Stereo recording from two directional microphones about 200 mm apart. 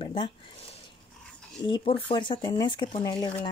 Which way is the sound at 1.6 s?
25° left (ahead or behind).